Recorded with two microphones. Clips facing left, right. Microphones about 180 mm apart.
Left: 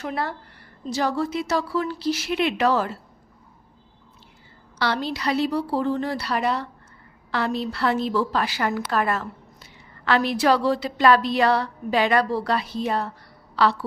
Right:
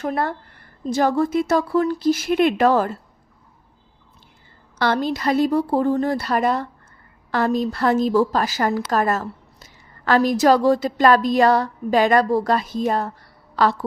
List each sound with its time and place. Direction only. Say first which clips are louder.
0.0 s a woman's voice: right 5 dB; 50° right (ahead or behind)
4.8 s a woman's voice: right 5 dB; 50° right (ahead or behind)